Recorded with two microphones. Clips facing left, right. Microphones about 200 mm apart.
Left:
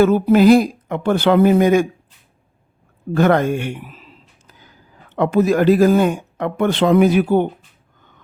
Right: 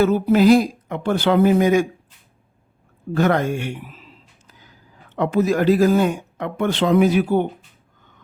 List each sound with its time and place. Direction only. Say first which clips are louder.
0.0 s speech: left 3 dB; 55° left (ahead or behind)
3.2 s speech: left 4 dB; 55° left (ahead or behind)
5.1 s speech: left 3 dB; 60° left (ahead or behind)